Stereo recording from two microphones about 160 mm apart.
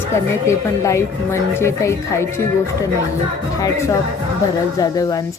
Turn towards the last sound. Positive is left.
turn(degrees=20)  # may be behind; listen again after turning